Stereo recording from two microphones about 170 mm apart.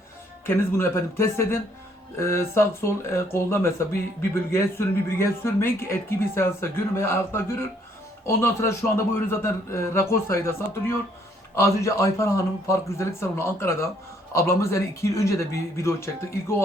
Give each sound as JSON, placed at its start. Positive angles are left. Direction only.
{"t": 0.4, "sound": "speech", "side_deg": 15}